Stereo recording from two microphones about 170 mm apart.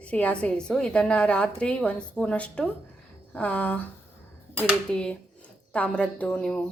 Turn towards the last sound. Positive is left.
turn(degrees=5)  # may be behind; listen again after turning